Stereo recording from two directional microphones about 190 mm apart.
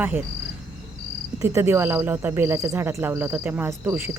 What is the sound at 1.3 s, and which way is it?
Speech, 15° right (ahead or behind).